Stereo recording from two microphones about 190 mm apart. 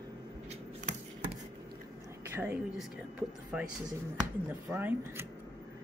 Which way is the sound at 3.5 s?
5° right (ahead or behind).